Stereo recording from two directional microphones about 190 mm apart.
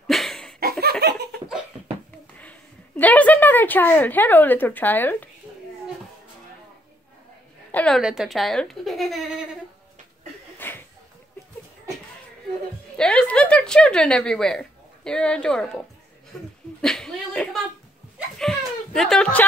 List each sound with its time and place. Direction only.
0.0 s laughter: centre (ahead or behind)
0.6 s laughter: 55° right (ahead or behind)
3.0 s a woman's voice: 10° left (ahead or behind)
7.7 s speech: 5° left (ahead or behind)
10.6 s a sound: 10° left (ahead or behind)
12.9 s speech: 5° left (ahead or behind)
16.8 s a sound: 5° left (ahead or behind)